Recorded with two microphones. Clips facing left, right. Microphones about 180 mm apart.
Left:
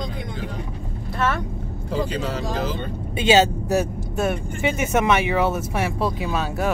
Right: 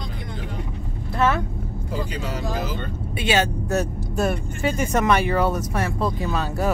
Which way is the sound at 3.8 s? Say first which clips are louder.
Right 3 dB; centre (ahead or behind).